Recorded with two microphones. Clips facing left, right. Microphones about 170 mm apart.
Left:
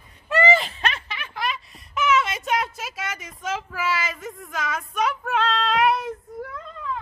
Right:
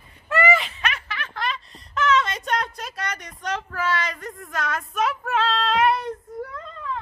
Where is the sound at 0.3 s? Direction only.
20° left (ahead or behind).